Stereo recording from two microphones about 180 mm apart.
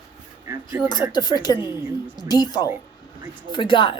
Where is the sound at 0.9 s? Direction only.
20° left (ahead or behind).